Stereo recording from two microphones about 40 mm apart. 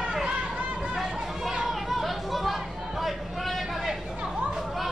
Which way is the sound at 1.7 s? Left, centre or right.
Centre.